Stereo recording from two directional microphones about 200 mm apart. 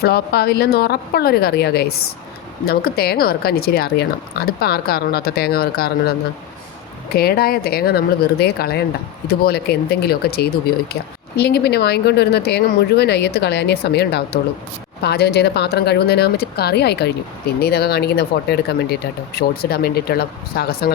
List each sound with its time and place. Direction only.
0.0 s speech: 50° left (ahead or behind)